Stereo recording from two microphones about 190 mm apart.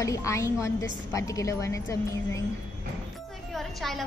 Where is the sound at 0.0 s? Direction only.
15° left (ahead or behind).